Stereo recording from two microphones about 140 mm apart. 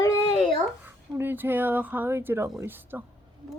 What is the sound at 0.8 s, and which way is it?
Speech, 15° right (ahead or behind).